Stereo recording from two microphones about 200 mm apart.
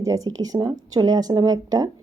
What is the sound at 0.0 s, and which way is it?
Speech, 15° right (ahead or behind).